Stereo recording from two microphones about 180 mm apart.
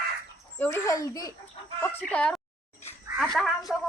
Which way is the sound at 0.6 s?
15° left (ahead or behind).